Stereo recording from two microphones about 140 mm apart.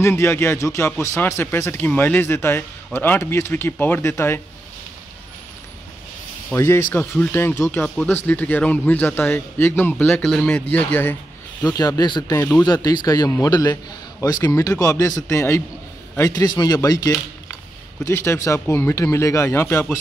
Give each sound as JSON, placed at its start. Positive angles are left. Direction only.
{"t": 0.0, "sound": "a man's voice", "side_deg": 20}
{"t": 6.5, "sound": "a man's voice", "side_deg": 15}
{"t": 11.6, "sound": "speech", "side_deg": 25}